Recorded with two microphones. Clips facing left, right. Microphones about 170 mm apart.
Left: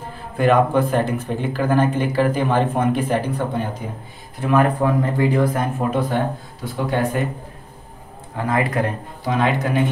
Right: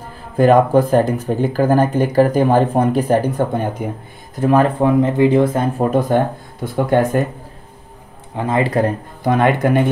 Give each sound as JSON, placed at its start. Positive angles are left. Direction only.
{"t": 0.4, "sound": "speech", "side_deg": -40}
{"t": 5.8, "sound": "speech", "side_deg": -45}
{"t": 8.4, "sound": "speech", "side_deg": -25}
{"t": 9.2, "sound": "speech", "side_deg": -55}